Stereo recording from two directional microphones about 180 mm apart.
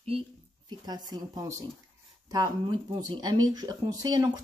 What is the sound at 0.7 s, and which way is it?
Speech, 20° right (ahead or behind).